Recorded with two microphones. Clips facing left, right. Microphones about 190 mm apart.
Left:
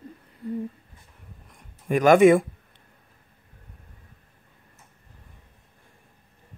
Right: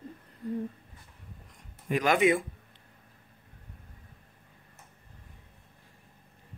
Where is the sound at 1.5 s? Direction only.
50° left (ahead or behind).